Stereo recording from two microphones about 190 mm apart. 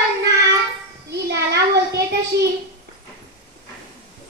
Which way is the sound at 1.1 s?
60° right (ahead or behind).